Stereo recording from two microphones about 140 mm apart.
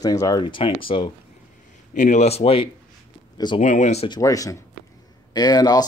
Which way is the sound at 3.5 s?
60° left (ahead or behind).